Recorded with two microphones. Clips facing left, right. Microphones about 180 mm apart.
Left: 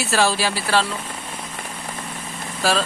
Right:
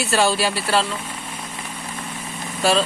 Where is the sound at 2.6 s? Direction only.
Centre (ahead or behind).